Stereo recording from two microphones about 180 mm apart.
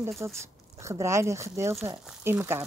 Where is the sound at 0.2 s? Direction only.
15° right (ahead or behind).